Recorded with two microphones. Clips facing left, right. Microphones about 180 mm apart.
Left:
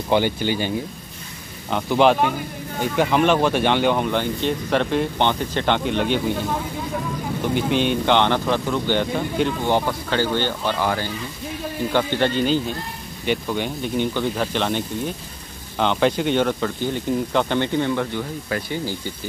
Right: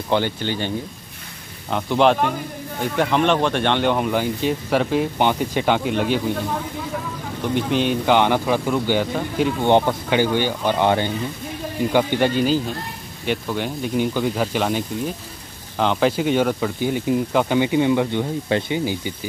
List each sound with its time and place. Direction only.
0.1 s speech: 10° left (ahead or behind)
7.5 s speech: centre (ahead or behind)
9.7 s speech: 20° right (ahead or behind)
11.9 s speech: 10° right (ahead or behind)